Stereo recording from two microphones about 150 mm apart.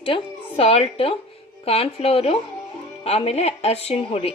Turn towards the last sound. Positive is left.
turn(degrees=40)  # may be behind; listen again after turning